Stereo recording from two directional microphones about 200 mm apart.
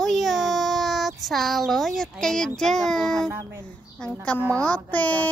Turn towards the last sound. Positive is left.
turn(degrees=10)  # may be behind; listen again after turning